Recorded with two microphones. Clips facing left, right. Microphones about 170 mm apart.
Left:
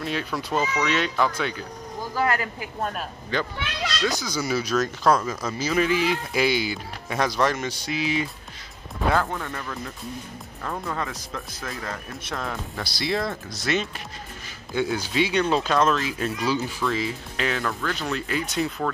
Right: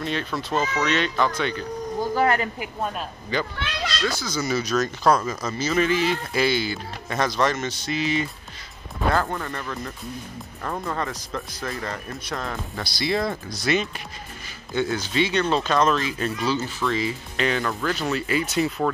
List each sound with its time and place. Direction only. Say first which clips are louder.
0.0 s speech: right 1 dB; 5° left (ahead or behind)
2.1 s speech: right 2 dB; 25° right (ahead or behind)
2.8 s speech: even; centre (ahead or behind)
4.1 s speech: even; 15° left (ahead or behind); by 18.7 s centre (ahead or behind)